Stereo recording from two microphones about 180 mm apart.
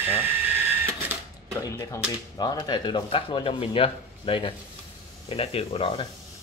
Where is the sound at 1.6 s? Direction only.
15° left (ahead or behind).